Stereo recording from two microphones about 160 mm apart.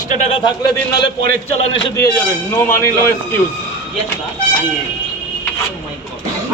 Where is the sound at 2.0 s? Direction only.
15° left (ahead or behind).